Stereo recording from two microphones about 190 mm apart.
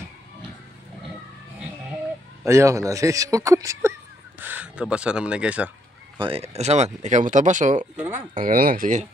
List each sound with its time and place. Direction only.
2.4 s speech: 15° right (ahead or behind)
6.1 s speech: 30° right (ahead or behind)
7.9 s speech: 10° right (ahead or behind)
8.4 s speech: 50° right (ahead or behind)